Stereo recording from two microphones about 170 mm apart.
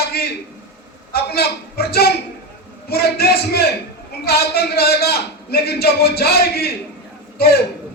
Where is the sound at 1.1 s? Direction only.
65° left (ahead or behind).